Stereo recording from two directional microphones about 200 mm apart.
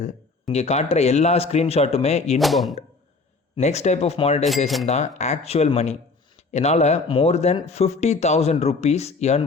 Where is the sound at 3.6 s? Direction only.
35° left (ahead or behind).